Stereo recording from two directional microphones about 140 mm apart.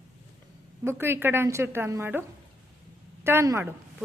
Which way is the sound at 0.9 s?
15° right (ahead or behind).